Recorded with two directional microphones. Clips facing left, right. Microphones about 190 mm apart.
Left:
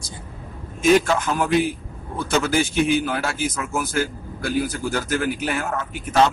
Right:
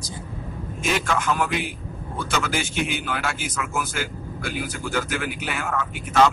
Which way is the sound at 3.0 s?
40° left (ahead or behind).